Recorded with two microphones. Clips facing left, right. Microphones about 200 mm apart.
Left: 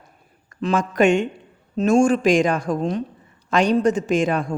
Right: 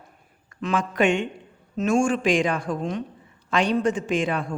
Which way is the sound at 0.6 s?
40° left (ahead or behind).